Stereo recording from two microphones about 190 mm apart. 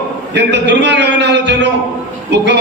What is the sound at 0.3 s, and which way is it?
A man's voice, 65° right (ahead or behind).